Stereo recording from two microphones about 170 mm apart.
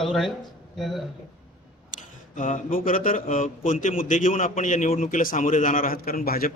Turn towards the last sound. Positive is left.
turn(degrees=60)  # may be behind; listen again after turning